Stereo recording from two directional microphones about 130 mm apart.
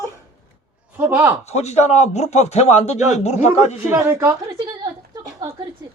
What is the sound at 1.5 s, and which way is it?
Speech, 60° left (ahead or behind).